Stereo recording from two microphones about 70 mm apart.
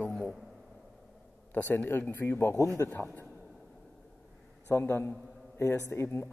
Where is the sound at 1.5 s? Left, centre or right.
Left.